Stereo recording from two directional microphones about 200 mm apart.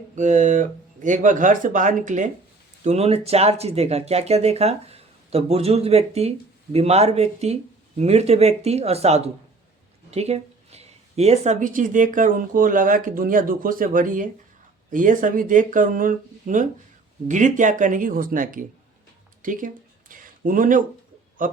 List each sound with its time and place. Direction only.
0.2 s speech: 35° right (ahead or behind)
19.4 s a sound: 40° right (ahead or behind)
21.4 s a man's voice: 45° right (ahead or behind)